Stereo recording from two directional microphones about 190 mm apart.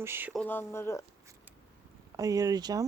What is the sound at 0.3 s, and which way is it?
Speech, 10° left (ahead or behind).